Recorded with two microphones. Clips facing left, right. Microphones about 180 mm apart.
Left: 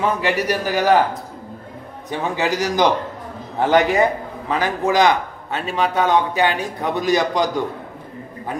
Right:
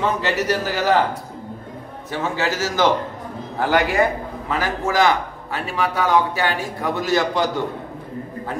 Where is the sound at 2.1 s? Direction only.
15° left (ahead or behind).